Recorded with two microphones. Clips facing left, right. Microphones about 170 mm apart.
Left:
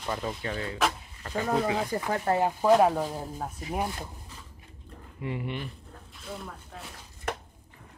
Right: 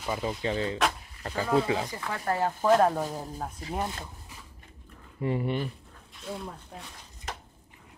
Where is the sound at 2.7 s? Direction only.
5° left (ahead or behind).